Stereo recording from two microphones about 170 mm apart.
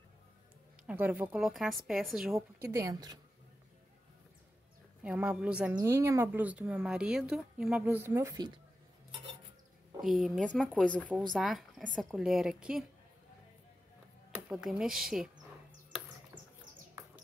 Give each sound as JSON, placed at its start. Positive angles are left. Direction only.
{"t": 0.8, "sound": "a woman's voice", "side_deg": -10}
{"t": 2.6, "sound": "a woman's voice", "side_deg": -15}
{"t": 5.0, "sound": "speech", "side_deg": -5}
{"t": 10.5, "sound": "a woman's voice", "side_deg": 0}
{"t": 14.5, "sound": "a woman's voice", "side_deg": 0}